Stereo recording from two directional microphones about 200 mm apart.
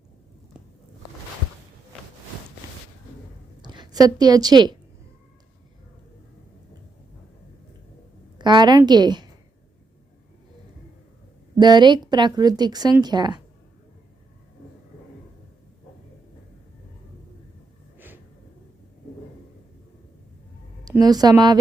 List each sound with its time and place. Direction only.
3.6 s a woman's voice: 20° right (ahead or behind)
8.4 s a woman's voice: 20° right (ahead or behind)
11.6 s a woman's voice: 20° right (ahead or behind)
17.9 s a sound: 10° right (ahead or behind)
21.0 s a woman's voice: 20° right (ahead or behind)